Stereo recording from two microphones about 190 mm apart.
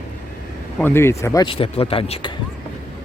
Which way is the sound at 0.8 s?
10° left (ahead or behind).